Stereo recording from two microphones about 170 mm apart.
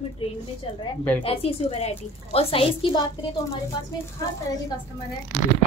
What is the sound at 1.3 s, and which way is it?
A woman's voice, 35° left (ahead or behind).